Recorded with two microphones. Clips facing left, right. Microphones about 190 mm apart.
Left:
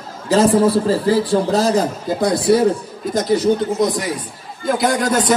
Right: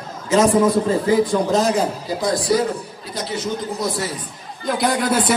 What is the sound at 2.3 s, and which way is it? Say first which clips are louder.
Speech: left 4 dB; 65° left (ahead or behind).